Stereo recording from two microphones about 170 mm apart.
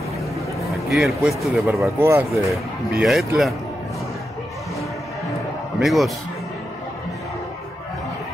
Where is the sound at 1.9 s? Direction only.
15° right (ahead or behind).